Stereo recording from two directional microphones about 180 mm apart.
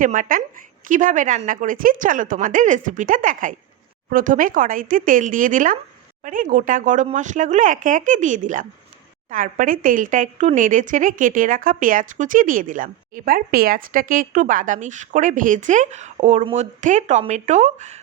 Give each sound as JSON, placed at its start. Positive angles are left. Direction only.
{"t": 0.0, "sound": "a woman's voice", "side_deg": -45}